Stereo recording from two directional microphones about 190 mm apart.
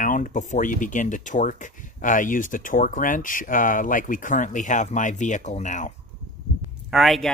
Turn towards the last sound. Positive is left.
turn(degrees=0)  # may be behind; listen again after turning